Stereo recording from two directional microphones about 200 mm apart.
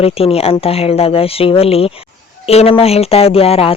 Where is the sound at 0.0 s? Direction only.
30° left (ahead or behind).